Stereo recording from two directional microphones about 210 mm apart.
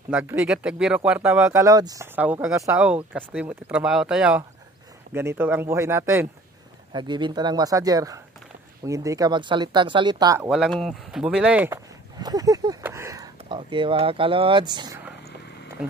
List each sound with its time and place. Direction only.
0.1 s speech: 10° right (ahead or behind)
10.5 s speech: centre (ahead or behind); by 15.0 s 20° right (ahead or behind)
15.8 s speech: 5° right (ahead or behind)